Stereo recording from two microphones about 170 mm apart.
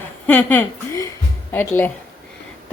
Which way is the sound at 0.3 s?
10° left (ahead or behind).